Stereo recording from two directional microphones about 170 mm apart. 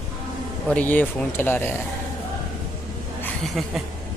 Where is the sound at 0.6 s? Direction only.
10° left (ahead or behind).